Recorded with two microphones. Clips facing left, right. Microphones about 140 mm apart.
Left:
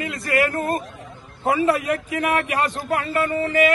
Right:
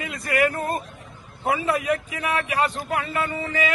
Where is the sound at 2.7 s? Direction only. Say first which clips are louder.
Left 3 dB; 40° left (ahead or behind).